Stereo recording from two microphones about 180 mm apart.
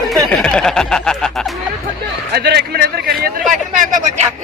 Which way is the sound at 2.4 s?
65° right (ahead or behind).